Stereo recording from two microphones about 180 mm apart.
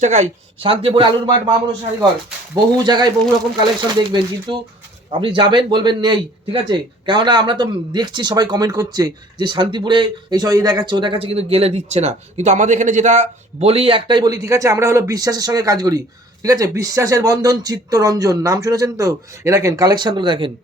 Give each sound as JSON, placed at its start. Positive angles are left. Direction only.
{"t": 0.0, "sound": "a man's voice", "side_deg": -40}